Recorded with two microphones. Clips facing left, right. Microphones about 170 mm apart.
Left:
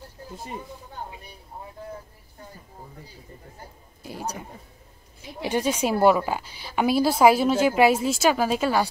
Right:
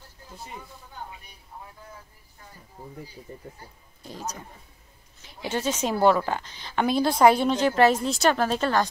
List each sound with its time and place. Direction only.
4.0 s a woman's voice: 10° left (ahead or behind)